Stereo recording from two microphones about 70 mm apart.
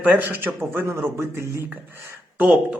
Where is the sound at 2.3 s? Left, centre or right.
Centre.